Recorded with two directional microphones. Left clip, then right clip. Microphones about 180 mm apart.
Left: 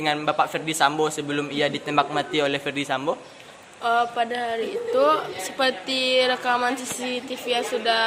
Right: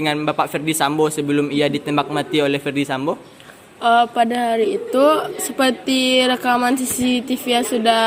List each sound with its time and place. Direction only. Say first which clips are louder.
0.0 s a man's voice: right 3 dB; 30° right (ahead or behind)
3.8 s a woman's voice: right 7 dB; 50° right (ahead or behind)